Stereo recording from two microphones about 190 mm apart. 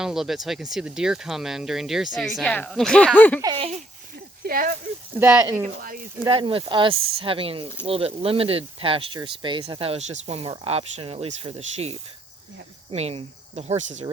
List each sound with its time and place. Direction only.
0.0 s speech: centre (ahead or behind)
3.4 s speech: 30° right (ahead or behind)
4.4 s speech: 50° right (ahead or behind)
5.2 s speech: 10° right (ahead or behind)
6.2 s speech: 25° right (ahead or behind)
6.9 s speech: 90° right
7.2 s speech: 30° right (ahead or behind)